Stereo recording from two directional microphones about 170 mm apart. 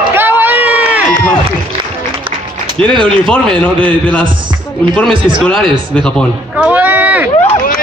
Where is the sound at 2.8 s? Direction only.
5° left (ahead or behind).